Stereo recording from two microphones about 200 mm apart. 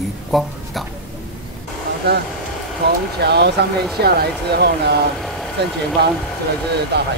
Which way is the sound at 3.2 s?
55° right (ahead or behind).